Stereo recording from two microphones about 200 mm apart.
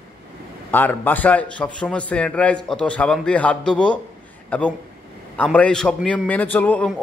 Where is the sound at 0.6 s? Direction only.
10° left (ahead or behind).